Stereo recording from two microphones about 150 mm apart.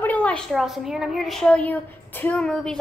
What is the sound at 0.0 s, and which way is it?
A woman's voice, 10° left (ahead or behind).